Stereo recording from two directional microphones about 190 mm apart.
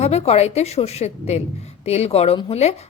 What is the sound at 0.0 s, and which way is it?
A woman's voice, 35° left (ahead or behind).